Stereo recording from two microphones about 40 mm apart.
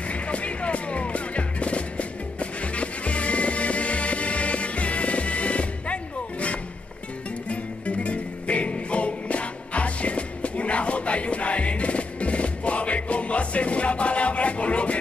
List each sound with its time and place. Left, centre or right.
0.1 s music: left
7.4 s music: left